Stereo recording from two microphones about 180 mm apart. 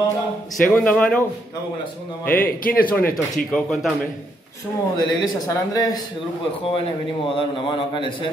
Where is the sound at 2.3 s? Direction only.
55° left (ahead or behind).